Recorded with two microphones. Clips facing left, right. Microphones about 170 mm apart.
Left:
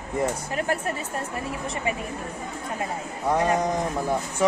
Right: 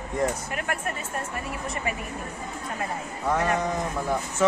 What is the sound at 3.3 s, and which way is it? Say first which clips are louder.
Speech: left 2 dB; 20° left (ahead or behind).